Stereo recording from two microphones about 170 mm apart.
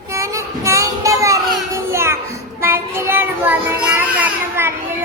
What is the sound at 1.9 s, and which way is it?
Children playing, 15° right (ahead or behind).